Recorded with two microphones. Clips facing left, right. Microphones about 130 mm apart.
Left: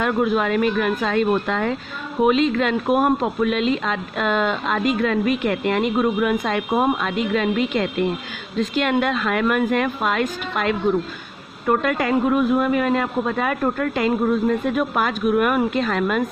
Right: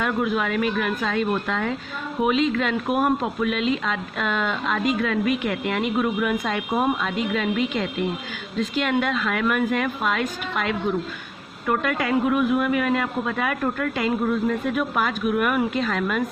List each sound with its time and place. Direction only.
0.0 s a woman's voice: 45° left (ahead or behind)
11.6 s a man's voice: 35° left (ahead or behind)